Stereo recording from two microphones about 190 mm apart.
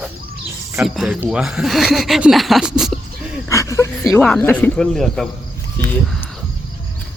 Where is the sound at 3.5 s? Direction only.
15° left (ahead or behind).